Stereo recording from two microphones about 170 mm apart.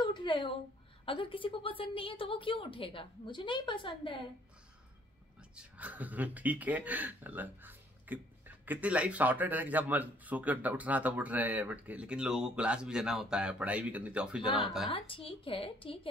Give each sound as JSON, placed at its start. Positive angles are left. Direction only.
{"t": 0.0, "sound": "a sound", "side_deg": 30}
{"t": 1.0, "sound": "a woman's voice", "side_deg": 30}
{"t": 5.6, "sound": "speech", "side_deg": -10}
{"t": 14.4, "sound": "a woman's voice", "side_deg": 30}